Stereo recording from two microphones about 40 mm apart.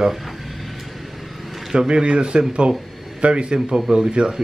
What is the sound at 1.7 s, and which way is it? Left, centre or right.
A man's voice, right.